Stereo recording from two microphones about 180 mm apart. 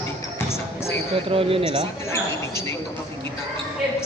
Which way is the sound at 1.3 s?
30° right (ahead or behind).